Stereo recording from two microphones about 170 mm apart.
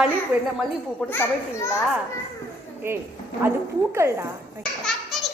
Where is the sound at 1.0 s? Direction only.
15° left (ahead or behind).